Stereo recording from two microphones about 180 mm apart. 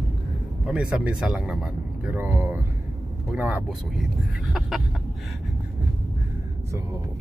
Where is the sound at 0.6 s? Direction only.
5° right (ahead or behind).